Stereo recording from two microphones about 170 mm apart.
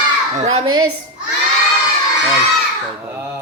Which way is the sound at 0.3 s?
40° right (ahead or behind).